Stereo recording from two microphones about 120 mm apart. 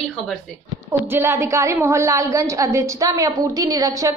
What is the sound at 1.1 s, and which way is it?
A woman's voice, 20° right (ahead or behind).